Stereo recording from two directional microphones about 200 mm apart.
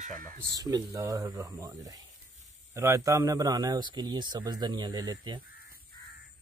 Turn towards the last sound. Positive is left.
turn(degrees=-20)  # may be behind; listen again after turning